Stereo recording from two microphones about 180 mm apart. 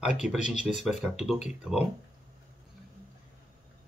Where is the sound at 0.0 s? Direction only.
5° right (ahead or behind).